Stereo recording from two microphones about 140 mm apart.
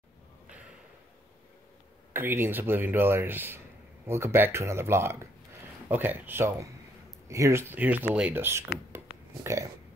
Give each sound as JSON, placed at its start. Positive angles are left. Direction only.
{"t": 2.1, "sound": "speech", "side_deg": -15}
{"t": 8.9, "sound": "burping", "side_deg": -15}
{"t": 9.4, "sound": "speech", "side_deg": -20}